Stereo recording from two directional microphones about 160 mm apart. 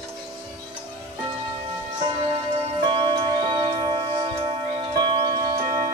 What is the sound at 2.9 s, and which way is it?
Music, 30° right (ahead or behind).